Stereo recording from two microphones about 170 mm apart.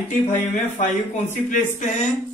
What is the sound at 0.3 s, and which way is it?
Speech, 45° left (ahead or behind).